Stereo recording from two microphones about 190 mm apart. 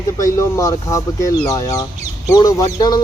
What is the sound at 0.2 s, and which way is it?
Speech, 15° left (ahead or behind).